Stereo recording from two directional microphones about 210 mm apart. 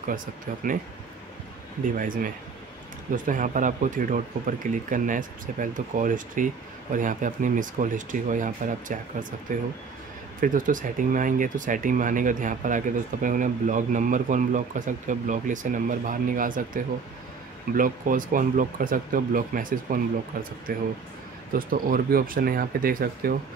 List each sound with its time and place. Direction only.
2.0 s speech: 40° right (ahead or behind)